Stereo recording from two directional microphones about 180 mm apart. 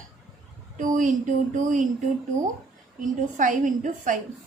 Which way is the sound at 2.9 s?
45° right (ahead or behind).